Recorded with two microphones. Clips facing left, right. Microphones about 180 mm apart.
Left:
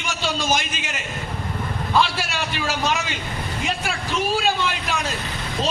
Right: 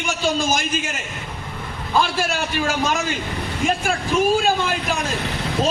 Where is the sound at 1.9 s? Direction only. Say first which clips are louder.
Right 2 dB; 50° right (ahead or behind).